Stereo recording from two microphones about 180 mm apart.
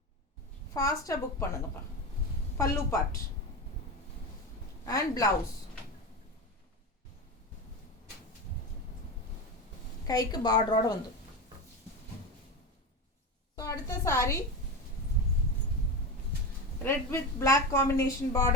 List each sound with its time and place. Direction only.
0.7 s a woman's voice: 20° left (ahead or behind)
2.6 s a woman's voice: 15° left (ahead or behind)
4.9 s a woman's voice: 20° left (ahead or behind)
10.1 s a woman's voice: 20° left (ahead or behind)
13.6 s a woman's voice: 20° left (ahead or behind)
16.8 s a woman's voice: 15° left (ahead or behind)